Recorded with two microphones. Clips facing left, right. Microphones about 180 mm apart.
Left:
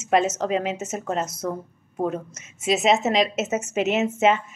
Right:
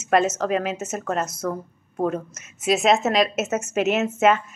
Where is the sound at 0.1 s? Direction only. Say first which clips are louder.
Right 1 dB; 20° left (ahead or behind).